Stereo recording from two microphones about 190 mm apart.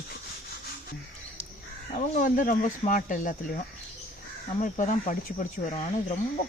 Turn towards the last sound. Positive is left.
turn(degrees=35)  # may be behind; listen again after turning